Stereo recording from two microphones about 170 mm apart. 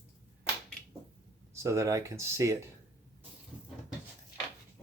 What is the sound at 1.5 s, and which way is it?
Speech, 15° right (ahead or behind).